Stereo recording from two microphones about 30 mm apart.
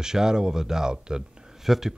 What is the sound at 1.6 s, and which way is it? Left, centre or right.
Speech, centre.